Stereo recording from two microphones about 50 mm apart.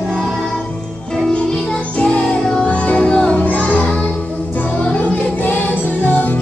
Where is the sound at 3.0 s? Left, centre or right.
Centre.